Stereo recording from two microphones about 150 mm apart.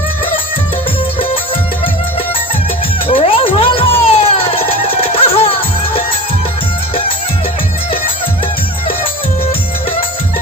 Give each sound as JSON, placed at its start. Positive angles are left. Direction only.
{"t": 3.1, "sound": "music", "side_deg": 35}